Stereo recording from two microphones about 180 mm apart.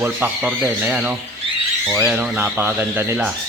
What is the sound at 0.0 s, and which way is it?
Speech, 10° right (ahead or behind).